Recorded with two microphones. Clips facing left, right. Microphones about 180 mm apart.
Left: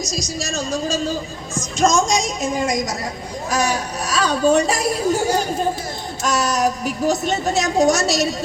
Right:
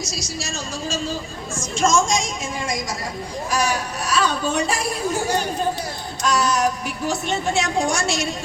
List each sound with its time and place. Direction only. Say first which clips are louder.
0.3 s a woman's voice: left 7 dB; 40° left (ahead or behind)
6.4 s a woman's voice: left 1 dB; 40° left (ahead or behind)